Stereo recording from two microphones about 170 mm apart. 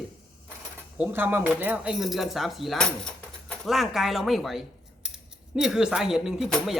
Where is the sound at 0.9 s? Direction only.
10° right (ahead or behind).